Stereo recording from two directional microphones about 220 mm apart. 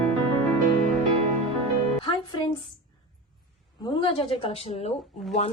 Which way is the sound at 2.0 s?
20° left (ahead or behind).